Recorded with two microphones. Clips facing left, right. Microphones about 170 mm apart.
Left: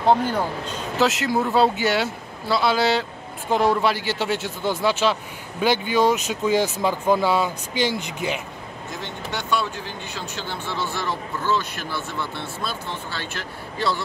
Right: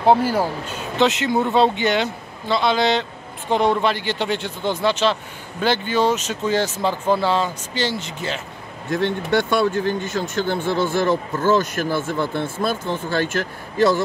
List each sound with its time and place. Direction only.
0.0 s speech: 5° right (ahead or behind); by 8.4 s 15° left (ahead or behind)
8.9 s speech: 60° right (ahead or behind)